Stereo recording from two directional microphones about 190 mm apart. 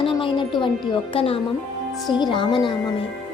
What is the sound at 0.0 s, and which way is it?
Music, 25° left (ahead or behind).